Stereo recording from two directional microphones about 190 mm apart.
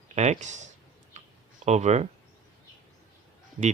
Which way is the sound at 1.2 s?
40° right (ahead or behind).